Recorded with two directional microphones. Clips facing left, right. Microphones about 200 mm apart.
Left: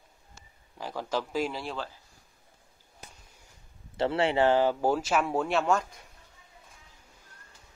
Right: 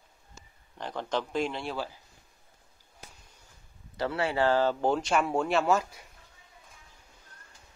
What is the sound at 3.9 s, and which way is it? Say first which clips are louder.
Speech: left 3 dB; 25° left (ahead or behind).